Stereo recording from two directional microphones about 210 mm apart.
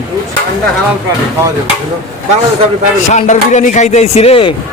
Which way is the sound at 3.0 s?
35° left (ahead or behind).